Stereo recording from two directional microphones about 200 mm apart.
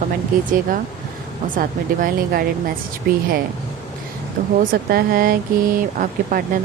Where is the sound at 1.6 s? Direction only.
45° right (ahead or behind).